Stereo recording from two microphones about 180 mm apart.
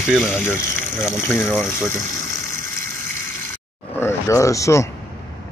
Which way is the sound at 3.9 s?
15° left (ahead or behind).